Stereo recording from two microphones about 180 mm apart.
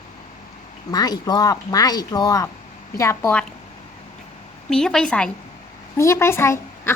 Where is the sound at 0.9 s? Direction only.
20° left (ahead or behind).